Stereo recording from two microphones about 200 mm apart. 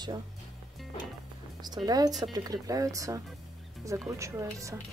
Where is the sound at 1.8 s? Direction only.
20° right (ahead or behind).